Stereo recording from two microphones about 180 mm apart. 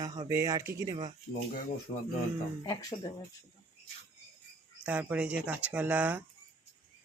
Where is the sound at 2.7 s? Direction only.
20° left (ahead or behind).